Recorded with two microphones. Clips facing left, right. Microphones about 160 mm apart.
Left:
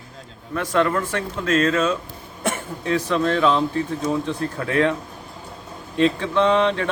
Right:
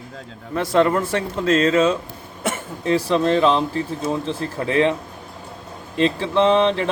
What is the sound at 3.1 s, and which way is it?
A man's voice, 30° right (ahead or behind).